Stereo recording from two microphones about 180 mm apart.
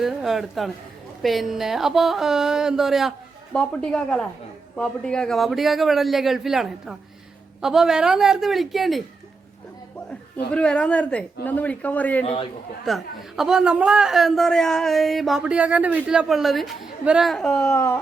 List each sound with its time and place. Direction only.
0.0 s speech: centre (ahead or behind)
10.1 s speech: 5° left (ahead or behind)
12.2 s a man's voice: 35° left (ahead or behind)
12.8 s speech: centre (ahead or behind)